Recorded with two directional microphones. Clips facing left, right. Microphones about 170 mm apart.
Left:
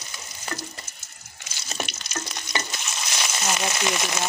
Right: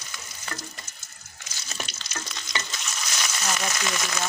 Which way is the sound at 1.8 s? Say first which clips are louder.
Left 4 dB; 20° left (ahead or behind).